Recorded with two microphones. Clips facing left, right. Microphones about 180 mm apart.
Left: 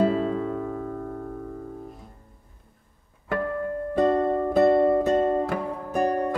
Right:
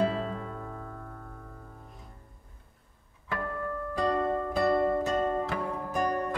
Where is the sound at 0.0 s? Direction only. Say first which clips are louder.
Left 7 dB; 45° left (ahead or behind).